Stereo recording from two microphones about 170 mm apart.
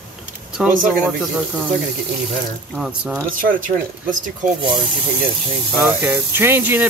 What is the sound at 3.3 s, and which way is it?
Speech, 55° right (ahead or behind).